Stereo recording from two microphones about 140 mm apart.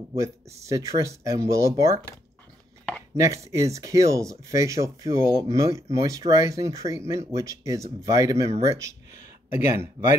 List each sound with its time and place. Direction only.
0.1 s speech: 20° right (ahead or behind)
3.2 s speech: 20° right (ahead or behind)